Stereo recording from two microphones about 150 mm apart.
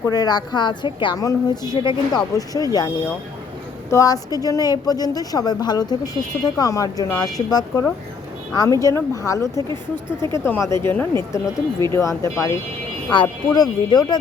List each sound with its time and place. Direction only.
0.1 s a woman's voice: 25° left (ahead or behind)